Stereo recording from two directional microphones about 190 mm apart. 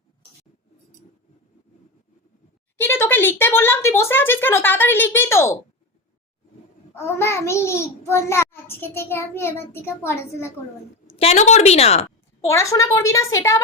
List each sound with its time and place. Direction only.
2.8 s a child's voice: 10° left (ahead or behind)
6.9 s a child's voice: 15° left (ahead or behind)
11.0 s a woman's voice: 30° left (ahead or behind)
12.5 s a child's voice: 15° left (ahead or behind)